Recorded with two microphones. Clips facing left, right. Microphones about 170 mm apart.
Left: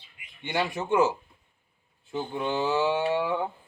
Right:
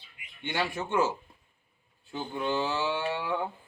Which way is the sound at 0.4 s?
15° left (ahead or behind).